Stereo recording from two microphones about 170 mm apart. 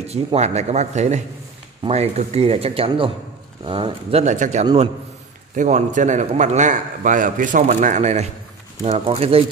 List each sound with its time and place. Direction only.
0.0 s a man's voice: 40° right (ahead or behind)